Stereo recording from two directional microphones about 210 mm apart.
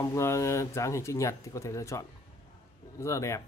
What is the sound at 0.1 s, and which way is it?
Speech, 15° left (ahead or behind).